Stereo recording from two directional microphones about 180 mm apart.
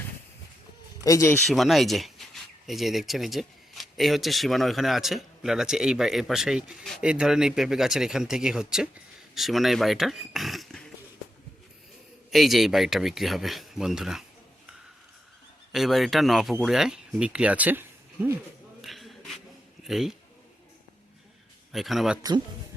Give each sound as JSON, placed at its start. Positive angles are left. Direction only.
{"t": 1.0, "sound": "speech", "side_deg": 15}
{"t": 1.5, "sound": "speech", "side_deg": 0}
{"t": 12.3, "sound": "speech", "side_deg": 0}
{"t": 15.7, "sound": "speech", "side_deg": 0}
{"t": 18.8, "sound": "a sound", "side_deg": 0}
{"t": 19.8, "sound": "speech", "side_deg": 0}
{"t": 21.7, "sound": "speech", "side_deg": 0}